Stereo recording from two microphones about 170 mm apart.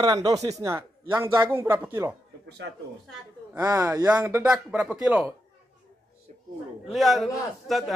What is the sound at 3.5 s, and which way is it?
Speech, 10° right (ahead or behind).